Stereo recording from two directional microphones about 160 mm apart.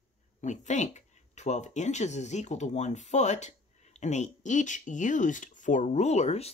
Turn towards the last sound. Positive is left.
turn(degrees=40)  # may be behind; listen again after turning